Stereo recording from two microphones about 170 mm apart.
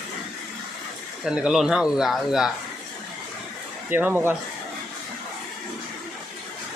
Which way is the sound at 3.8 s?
10° right (ahead or behind).